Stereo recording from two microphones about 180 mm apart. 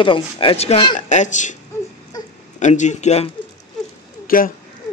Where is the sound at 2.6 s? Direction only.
40° left (ahead or behind).